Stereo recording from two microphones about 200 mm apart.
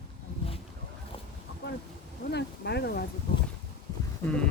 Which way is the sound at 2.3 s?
55° left (ahead or behind).